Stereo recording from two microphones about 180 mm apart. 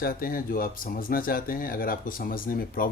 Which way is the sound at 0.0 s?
55° left (ahead or behind).